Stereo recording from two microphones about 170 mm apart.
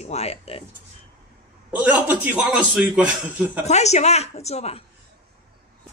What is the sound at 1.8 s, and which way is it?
A man's voice, 10° right (ahead or behind).